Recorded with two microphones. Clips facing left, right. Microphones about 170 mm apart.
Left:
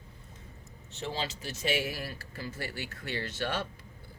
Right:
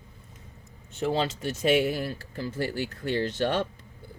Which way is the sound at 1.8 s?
50° right (ahead or behind).